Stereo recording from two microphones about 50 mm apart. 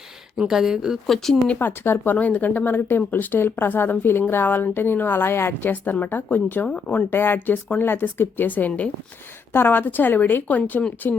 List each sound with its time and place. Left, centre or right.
0.3 s speech: centre
1.0 s speech: centre
1.5 s a woman's voice: left
2.1 s a woman's voice: left
5.5 s speech: left
6.7 s speech: left
7.1 s speech: left
9.5 s a woman's voice: left